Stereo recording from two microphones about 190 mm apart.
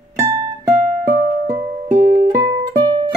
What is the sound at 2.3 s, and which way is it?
Music, 20° right (ahead or behind).